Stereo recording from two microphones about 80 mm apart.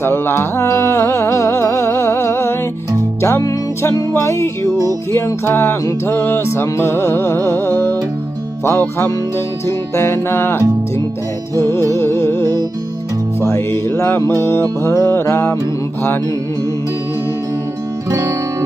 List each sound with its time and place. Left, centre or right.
0.0 s music: left
3.4 s music: left
4.1 s music: left
9.6 s music: left
18.1 s music: right